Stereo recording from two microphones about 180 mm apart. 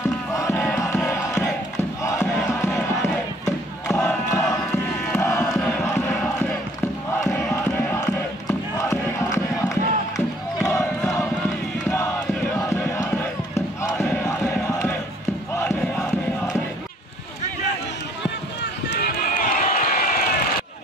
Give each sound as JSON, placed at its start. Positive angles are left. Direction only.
{"t": 0.3, "sound": "battle cry", "side_deg": 15}
{"t": 2.2, "sound": "crowd", "side_deg": 0}
{"t": 2.6, "sound": "crowd", "side_deg": 15}
{"t": 12.6, "sound": "crowd", "side_deg": 15}
{"t": 14.5, "sound": "battle cry", "side_deg": 15}
{"t": 15.5, "sound": "crowd", "side_deg": 15}
{"t": 18.6, "sound": "run", "side_deg": 60}